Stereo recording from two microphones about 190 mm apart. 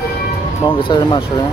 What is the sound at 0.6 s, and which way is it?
Speech, 20° left (ahead or behind).